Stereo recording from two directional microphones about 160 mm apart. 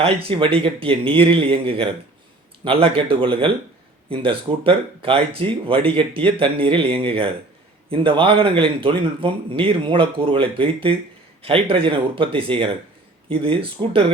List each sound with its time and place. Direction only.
0.0 s speech: 35° right (ahead or behind)